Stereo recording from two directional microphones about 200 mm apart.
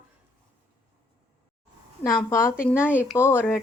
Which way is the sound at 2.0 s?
15° left (ahead or behind).